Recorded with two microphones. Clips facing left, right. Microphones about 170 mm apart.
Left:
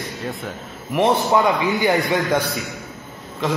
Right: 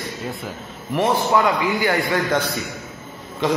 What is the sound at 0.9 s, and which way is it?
A man's voice, 20° left (ahead or behind).